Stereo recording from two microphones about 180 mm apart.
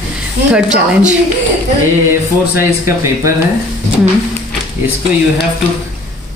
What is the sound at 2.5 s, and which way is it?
Speech, 15° right (ahead or behind).